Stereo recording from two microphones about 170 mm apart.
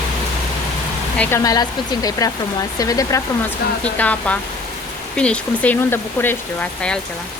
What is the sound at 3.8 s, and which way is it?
Speech, 10° left (ahead or behind).